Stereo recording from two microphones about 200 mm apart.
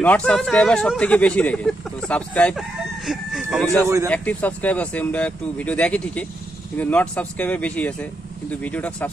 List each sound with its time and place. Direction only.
0.0 s speech: 5° left (ahead or behind)
3.8 s a man's voice: 15° right (ahead or behind)
4.1 s speech: 5° left (ahead or behind)